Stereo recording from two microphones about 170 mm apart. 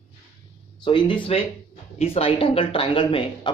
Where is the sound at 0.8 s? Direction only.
30° left (ahead or behind).